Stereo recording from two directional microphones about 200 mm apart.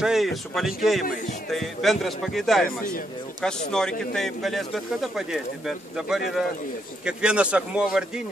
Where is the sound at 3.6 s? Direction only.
5° left (ahead or behind).